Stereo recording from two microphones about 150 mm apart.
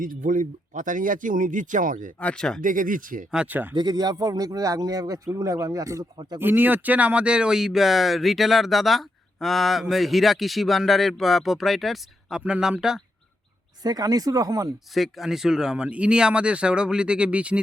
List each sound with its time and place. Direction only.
0.0 s speech: 60° right (ahead or behind)
2.1 s speech: 5° left (ahead or behind)
2.6 s speech: 65° right (ahead or behind)
3.3 s speech: 10° right (ahead or behind)
3.8 s speech: 25° right (ahead or behind); by 13.0 s 5° right (ahead or behind)
13.8 s speech: 25° right (ahead or behind)
14.9 s speech: centre (ahead or behind)